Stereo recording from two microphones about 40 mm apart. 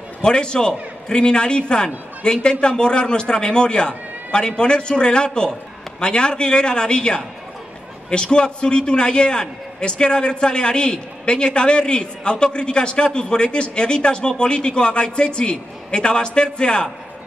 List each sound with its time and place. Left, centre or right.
0.2 s a man's voice: left